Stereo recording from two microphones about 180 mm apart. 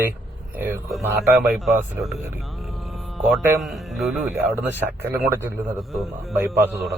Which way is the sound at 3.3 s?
Centre (ahead or behind).